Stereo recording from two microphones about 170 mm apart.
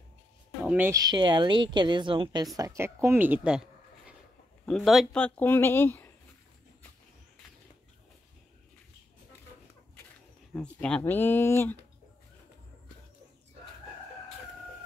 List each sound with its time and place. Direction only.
0.7 s speech: 10° right (ahead or behind)
0.9 s a woman's voice: 25° right (ahead or behind)
2.5 s speech: 20° right (ahead or behind); by 6.1 s 10° left (ahead or behind)
10.5 s speech: 5° left (ahead or behind)